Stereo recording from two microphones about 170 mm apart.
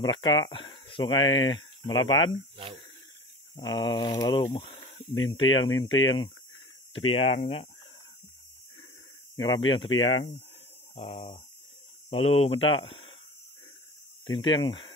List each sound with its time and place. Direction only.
0.0 s speech: 25° left (ahead or behind)
2.5 s speech: 35° right (ahead or behind)
3.5 s speech: 25° left (ahead or behind)
9.4 s speech: 25° left (ahead or behind)
14.2 s speech: 25° left (ahead or behind)